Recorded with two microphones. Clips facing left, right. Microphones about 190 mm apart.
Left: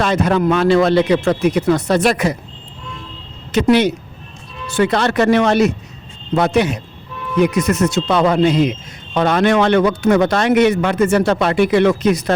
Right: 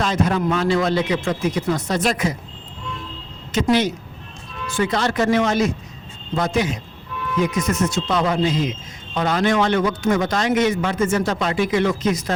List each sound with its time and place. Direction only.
0.0 s speech: 65° left (ahead or behind)
3.5 s speech: 65° left (ahead or behind)